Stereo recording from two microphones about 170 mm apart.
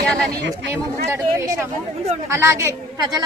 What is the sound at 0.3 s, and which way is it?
Speech, 90° right.